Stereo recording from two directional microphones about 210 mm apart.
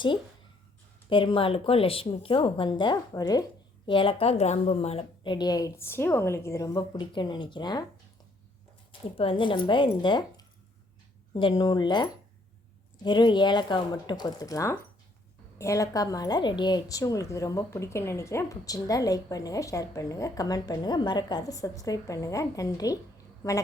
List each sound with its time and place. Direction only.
1.1 s a woman's voice: 25° left (ahead or behind)
8.9 s a woman's voice: 25° left (ahead or behind)